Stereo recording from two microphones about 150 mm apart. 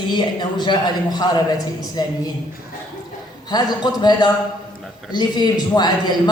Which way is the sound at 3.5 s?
25° left (ahead or behind).